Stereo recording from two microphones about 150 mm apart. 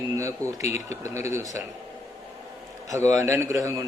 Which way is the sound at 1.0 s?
20° right (ahead or behind).